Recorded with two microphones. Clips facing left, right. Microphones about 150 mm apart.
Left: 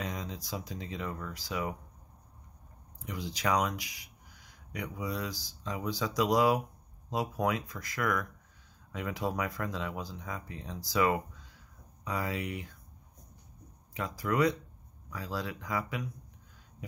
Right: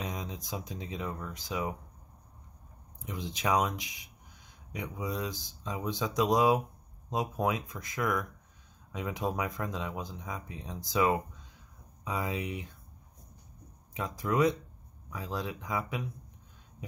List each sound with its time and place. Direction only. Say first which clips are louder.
0.0 s speech: even; 20° right (ahead or behind)
3.0 s speech: even; 20° right (ahead or behind)
13.9 s speech: right 1 dB; 20° right (ahead or behind)